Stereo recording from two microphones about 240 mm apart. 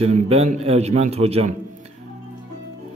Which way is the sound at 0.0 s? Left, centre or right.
Right.